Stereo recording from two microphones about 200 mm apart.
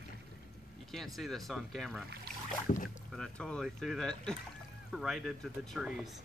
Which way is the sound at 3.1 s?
5° left (ahead or behind).